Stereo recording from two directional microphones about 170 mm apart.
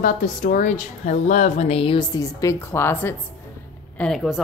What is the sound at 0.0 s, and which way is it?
A woman's voice, 50° left (ahead or behind).